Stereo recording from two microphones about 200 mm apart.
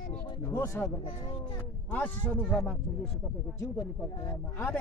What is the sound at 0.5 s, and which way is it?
Speech, 15° left (ahead or behind).